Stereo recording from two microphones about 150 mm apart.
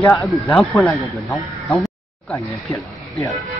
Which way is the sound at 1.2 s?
Centre (ahead or behind).